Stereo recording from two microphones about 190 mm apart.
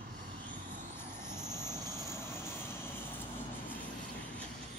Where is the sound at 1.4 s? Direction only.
20° right (ahead or behind).